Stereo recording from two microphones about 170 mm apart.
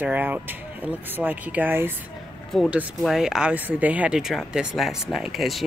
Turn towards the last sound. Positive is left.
turn(degrees=0)  # may be behind; listen again after turning